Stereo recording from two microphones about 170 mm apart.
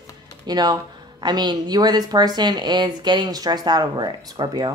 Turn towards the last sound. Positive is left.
turn(degrees=-25)  # may be behind; listen again after turning